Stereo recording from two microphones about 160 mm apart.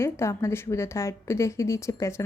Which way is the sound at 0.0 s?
15° left (ahead or behind).